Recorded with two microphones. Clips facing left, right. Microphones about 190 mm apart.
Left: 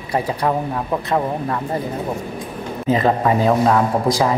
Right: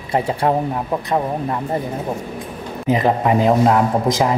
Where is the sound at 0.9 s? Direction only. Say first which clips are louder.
Even; 15° right (ahead or behind).